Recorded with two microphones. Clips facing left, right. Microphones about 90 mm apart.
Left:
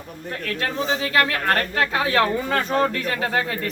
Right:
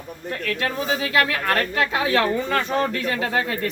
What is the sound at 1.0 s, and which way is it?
Speech, 35° left (ahead or behind).